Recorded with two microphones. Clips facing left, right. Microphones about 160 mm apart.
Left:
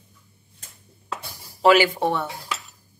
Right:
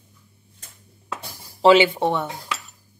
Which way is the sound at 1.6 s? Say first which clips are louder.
Right 2 dB; 25° right (ahead or behind).